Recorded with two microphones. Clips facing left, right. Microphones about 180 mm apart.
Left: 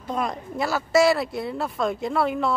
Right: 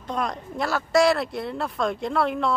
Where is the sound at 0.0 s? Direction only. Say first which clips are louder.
Left 1 dB; 5° left (ahead or behind).